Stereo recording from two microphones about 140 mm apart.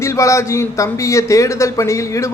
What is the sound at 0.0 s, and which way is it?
Speech, 20° left (ahead or behind).